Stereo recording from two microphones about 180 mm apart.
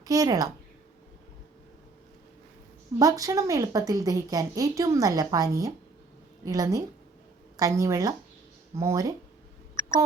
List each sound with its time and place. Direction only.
0.0 s a woman's voice: 20° right (ahead or behind)
3.0 s a woman's voice: 20° right (ahead or behind)